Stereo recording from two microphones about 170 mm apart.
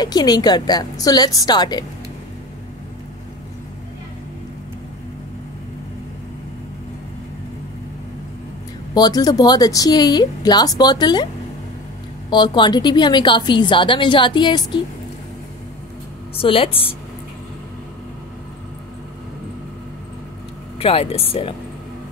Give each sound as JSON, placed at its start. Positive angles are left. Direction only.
{"t": 0.0, "sound": "a woman's voice", "side_deg": 25}
{"t": 8.9, "sound": "a woman's voice", "side_deg": 25}
{"t": 12.3, "sound": "a woman's voice", "side_deg": 25}
{"t": 16.3, "sound": "speech", "side_deg": 35}
{"t": 20.8, "sound": "speech", "side_deg": 35}